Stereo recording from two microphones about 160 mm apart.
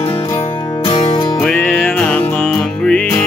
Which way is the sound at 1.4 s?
5° left (ahead or behind).